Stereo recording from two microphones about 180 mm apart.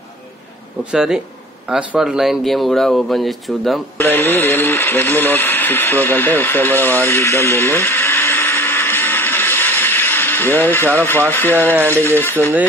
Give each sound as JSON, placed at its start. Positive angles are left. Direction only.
{"t": 0.9, "sound": "speech", "side_deg": -5}
{"t": 4.0, "sound": "speech", "side_deg": 10}